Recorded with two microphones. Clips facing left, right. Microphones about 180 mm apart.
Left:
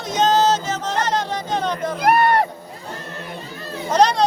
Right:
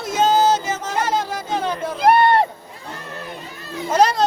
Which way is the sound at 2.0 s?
25° right (ahead or behind).